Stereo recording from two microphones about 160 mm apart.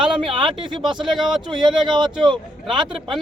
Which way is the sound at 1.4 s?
30° right (ahead or behind).